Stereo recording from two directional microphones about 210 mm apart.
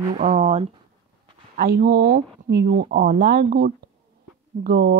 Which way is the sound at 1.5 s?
45° right (ahead or behind).